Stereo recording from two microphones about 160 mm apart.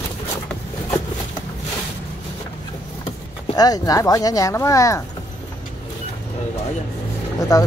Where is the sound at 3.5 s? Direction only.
25° left (ahead or behind).